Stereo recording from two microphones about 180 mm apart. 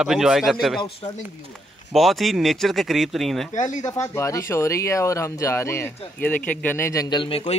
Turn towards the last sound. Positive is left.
turn(degrees=30)  # may be behind; listen again after turning